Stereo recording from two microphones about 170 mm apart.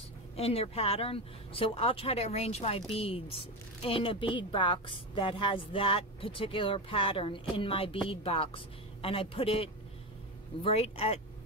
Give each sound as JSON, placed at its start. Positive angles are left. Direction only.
{"t": 0.4, "sound": "speech", "side_deg": 35}